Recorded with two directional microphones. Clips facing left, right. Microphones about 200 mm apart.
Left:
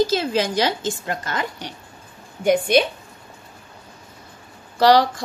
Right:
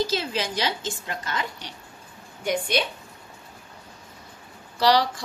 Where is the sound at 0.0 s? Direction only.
45° left (ahead or behind).